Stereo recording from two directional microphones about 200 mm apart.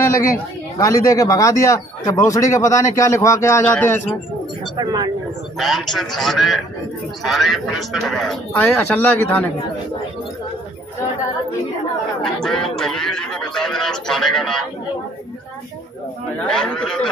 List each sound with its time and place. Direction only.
0.0 s a sound: 15° left (ahead or behind)
0.7 s speech: 15° left (ahead or behind)
4.7 s speech: 20° right (ahead or behind)
5.6 s speech: centre (ahead or behind)
12.4 s speech: centre (ahead or behind)
16.4 s speech: 5° left (ahead or behind)